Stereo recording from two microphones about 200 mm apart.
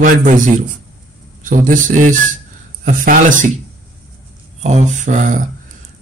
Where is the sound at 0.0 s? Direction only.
40° right (ahead or behind).